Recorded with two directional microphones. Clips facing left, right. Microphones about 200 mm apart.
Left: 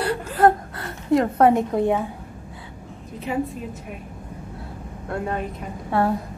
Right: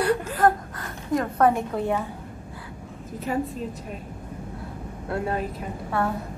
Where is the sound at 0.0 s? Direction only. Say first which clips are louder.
Left 2 dB; 30° left (ahead or behind).